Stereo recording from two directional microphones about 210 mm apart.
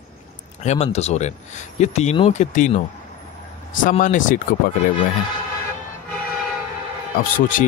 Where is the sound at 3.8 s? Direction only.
40° left (ahead or behind).